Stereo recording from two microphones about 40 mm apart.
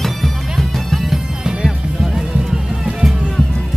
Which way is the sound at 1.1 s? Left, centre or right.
Centre.